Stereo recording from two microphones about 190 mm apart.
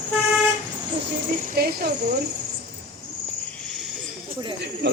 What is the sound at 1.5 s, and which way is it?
Speech, 55° right (ahead or behind).